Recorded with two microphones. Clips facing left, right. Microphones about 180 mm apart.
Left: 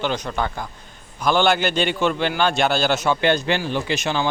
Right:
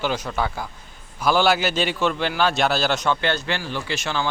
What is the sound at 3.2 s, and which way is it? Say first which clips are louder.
Speech: left 5 dB; 15° left (ahead or behind).